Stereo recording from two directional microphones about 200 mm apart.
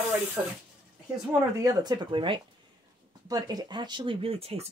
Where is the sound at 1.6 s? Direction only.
20° right (ahead or behind).